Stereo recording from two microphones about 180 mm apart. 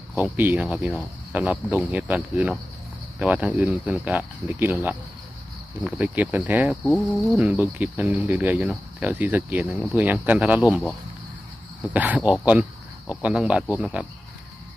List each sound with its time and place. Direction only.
0.2 s speech: 10° right (ahead or behind)
11.9 s speech: 10° right (ahead or behind)